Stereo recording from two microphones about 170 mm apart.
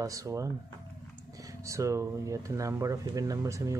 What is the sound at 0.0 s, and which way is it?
Speech, 20° right (ahead or behind).